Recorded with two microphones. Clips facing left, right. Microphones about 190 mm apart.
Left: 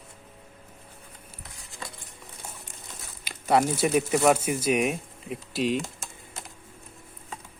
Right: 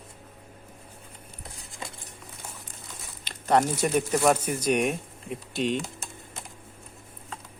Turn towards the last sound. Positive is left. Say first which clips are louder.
# left 1 dB
turn(degrees=5)  # may be behind; listen again after turning